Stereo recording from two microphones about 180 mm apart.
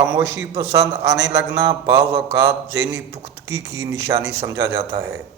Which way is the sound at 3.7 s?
15° right (ahead or behind).